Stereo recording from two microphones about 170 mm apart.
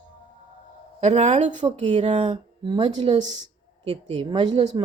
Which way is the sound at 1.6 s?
20° right (ahead or behind).